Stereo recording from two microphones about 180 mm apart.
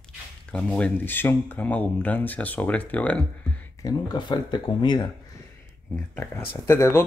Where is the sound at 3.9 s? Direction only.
25° left (ahead or behind).